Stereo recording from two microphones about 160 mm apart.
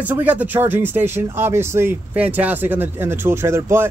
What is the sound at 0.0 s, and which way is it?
Speech, 10° right (ahead or behind).